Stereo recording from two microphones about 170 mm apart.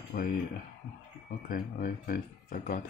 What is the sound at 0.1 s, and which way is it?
Speech, 55° left (ahead or behind).